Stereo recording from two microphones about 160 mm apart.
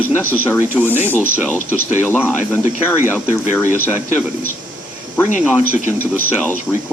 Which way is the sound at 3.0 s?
10° right (ahead or behind).